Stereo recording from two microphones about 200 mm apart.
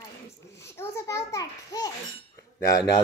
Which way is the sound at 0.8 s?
15° left (ahead or behind).